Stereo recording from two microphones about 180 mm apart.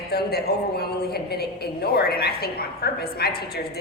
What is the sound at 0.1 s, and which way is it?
A woman's voice, 60° left (ahead or behind).